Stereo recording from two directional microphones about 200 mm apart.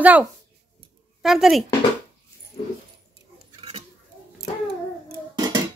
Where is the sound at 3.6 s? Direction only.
30° right (ahead or behind).